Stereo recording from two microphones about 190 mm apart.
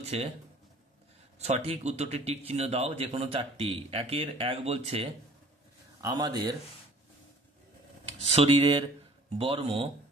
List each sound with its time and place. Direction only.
0.0 s speech: 30° right (ahead or behind)
1.4 s speech: 35° right (ahead or behind)
5.9 s a man's voice: 20° right (ahead or behind)
8.3 s speech: 30° right (ahead or behind)